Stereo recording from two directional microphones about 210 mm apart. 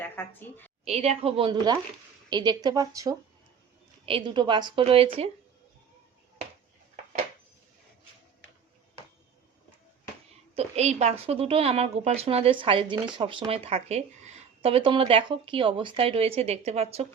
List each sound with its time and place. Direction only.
0.0 s a woman's voice: 10° left (ahead or behind)
0.9 s a woman's voice: 30° right (ahead or behind)
6.9 s dishes: 35° right (ahead or behind)
10.5 s a woman's voice: 30° right (ahead or behind)